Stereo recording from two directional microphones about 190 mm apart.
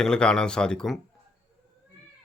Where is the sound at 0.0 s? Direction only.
5° left (ahead or behind).